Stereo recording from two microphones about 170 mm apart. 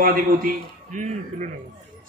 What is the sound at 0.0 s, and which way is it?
A man's voice, 55° right (ahead or behind).